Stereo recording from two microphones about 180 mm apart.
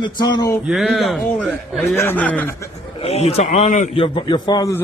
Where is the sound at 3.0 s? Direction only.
35° left (ahead or behind).